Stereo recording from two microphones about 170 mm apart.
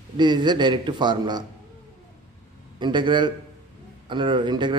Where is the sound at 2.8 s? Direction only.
25° right (ahead or behind).